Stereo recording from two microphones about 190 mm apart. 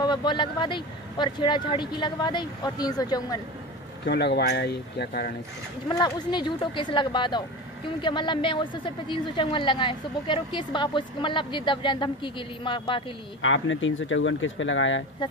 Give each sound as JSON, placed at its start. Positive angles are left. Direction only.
{"t": 0.0, "sound": "a woman's voice", "side_deg": 25}
{"t": 4.0, "sound": "speech", "side_deg": 60}
{"t": 5.9, "sound": "a woman's voice", "side_deg": 20}
{"t": 13.4, "sound": "speech", "side_deg": 85}